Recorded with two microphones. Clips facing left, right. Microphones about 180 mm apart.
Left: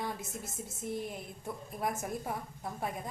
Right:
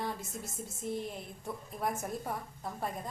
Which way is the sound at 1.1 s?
Centre (ahead or behind).